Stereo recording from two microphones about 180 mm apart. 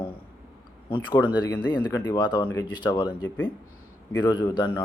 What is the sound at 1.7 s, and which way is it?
Speech, 25° left (ahead or behind).